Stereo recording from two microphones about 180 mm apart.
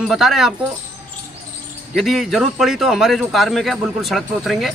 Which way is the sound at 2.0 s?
Centre (ahead or behind).